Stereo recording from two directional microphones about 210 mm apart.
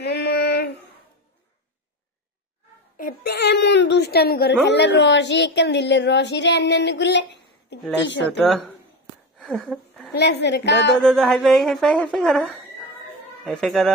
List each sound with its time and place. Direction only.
0.0 s female singing: 55° left (ahead or behind)
3.0 s a woman's voice: 45° left (ahead or behind)
8.3 s speech: centre (ahead or behind)
10.1 s speech: 55° left (ahead or behind)
11.0 s speech: centre (ahead or behind)